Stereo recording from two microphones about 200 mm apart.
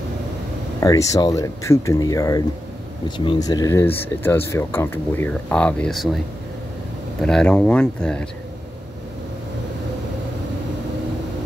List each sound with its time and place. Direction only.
0.7 s speech: 15° left (ahead or behind)